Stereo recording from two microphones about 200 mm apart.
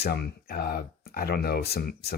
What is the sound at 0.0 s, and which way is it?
Speech, 50° left (ahead or behind).